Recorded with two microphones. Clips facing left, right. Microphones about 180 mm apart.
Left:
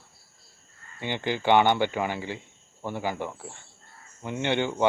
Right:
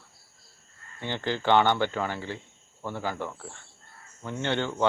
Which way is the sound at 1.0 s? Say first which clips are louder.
Left 2 dB; 15° left (ahead or behind).